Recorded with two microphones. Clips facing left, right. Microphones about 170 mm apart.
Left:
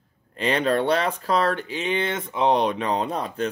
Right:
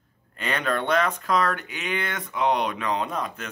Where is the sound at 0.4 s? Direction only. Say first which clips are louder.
Left 5 dB; 30° left (ahead or behind).